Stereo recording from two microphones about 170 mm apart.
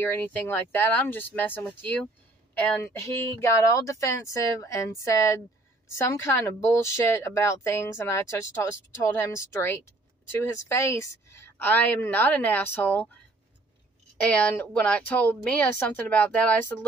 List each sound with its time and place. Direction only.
0.0 s speech: 15° left (ahead or behind)
3.3 s speech: 20° left (ahead or behind)
14.2 s speech: 10° left (ahead or behind)